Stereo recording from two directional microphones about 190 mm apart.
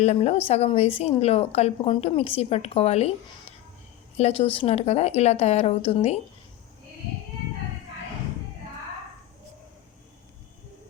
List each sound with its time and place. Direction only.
0.0 s speech: 35° left (ahead or behind)
4.2 s speech: 30° left (ahead or behind)